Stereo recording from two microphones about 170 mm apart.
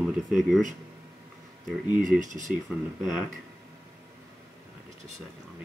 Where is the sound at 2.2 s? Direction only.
50° right (ahead or behind).